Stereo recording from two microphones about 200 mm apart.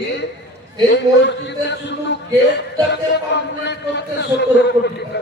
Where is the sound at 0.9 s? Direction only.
60° left (ahead or behind).